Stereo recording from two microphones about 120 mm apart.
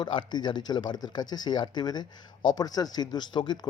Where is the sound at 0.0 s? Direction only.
40° left (ahead or behind).